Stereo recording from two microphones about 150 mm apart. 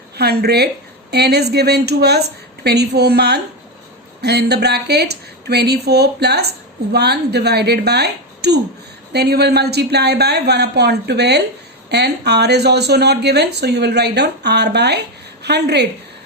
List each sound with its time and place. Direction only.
0.2 s a woman's voice: 90° right